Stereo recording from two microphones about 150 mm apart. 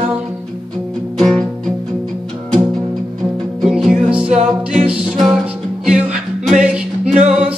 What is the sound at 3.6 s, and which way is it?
Music, 5° right (ahead or behind).